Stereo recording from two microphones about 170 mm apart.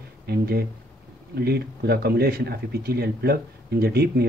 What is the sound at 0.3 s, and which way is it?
Speech, 65° right (ahead or behind).